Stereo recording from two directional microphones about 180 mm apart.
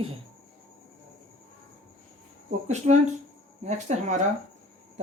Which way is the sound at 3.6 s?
40° right (ahead or behind).